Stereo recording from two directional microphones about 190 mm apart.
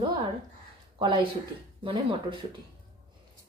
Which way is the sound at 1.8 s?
25° right (ahead or behind).